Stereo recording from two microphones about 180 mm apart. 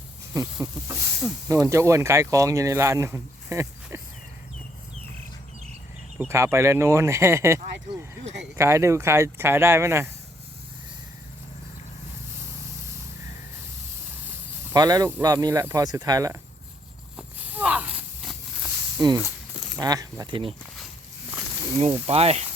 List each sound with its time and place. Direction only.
0.3 s speech: 15° right (ahead or behind)
6.1 s speech: 15° right (ahead or behind)
14.3 s speech: 15° right (ahead or behind)
17.2 s walk: 10° right (ahead or behind)
18.9 s speech: 20° right (ahead or behind)
22.0 s speech: 35° right (ahead or behind)